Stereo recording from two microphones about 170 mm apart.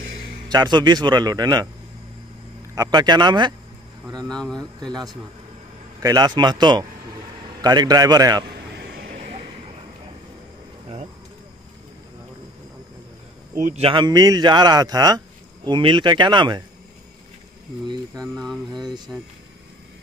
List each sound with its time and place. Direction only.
0.5 s speech: 25° right (ahead or behind)
2.7 s speech: 20° right (ahead or behind)
4.3 s mantra: 5° left (ahead or behind)
6.0 s speech: 25° right (ahead or behind)
8.7 s vehicle: 75° right (ahead or behind)
13.6 s speech: 40° right (ahead or behind)
18.2 s mantra: centre (ahead or behind)